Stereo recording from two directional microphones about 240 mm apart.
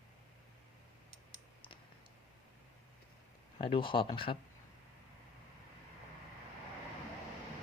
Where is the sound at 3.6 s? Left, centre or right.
Left.